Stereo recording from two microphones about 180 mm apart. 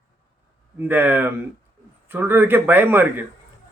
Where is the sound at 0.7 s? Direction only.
10° right (ahead or behind).